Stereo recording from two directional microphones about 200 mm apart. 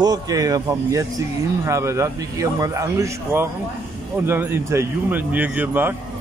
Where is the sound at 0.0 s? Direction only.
20° right (ahead or behind).